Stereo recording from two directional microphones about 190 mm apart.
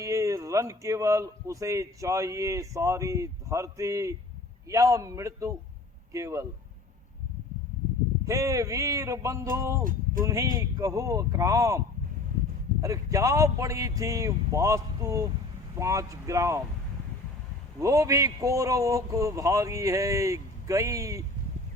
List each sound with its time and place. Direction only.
0.0 s speech: 15° right (ahead or behind)
8.2 s speech: 15° right (ahead or behind)
12.8 s speech: 15° right (ahead or behind)
17.7 s speech: 15° right (ahead or behind)